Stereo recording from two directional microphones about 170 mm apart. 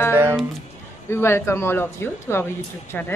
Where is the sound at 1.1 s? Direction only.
15° left (ahead or behind).